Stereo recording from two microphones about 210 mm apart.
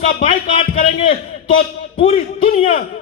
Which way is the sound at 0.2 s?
30° left (ahead or behind).